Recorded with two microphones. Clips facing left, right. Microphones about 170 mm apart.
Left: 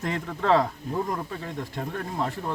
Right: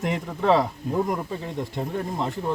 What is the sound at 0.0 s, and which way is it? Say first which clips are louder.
Speech: right 3 dB; 15° right (ahead or behind).